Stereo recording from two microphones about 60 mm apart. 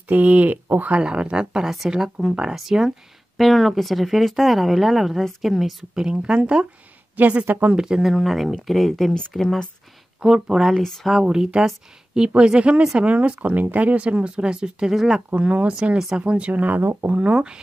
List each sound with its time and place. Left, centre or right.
0.1 s speech: right
1.0 s speech: centre
7.7 s speech: centre
10.2 s speech: centre
10.8 s speech: centre
11.1 s speech: centre
15.3 s speech: right
16.6 s speech: right
17.1 s speech: right